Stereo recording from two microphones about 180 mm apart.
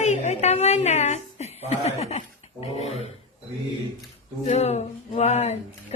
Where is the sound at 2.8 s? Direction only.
35° left (ahead or behind).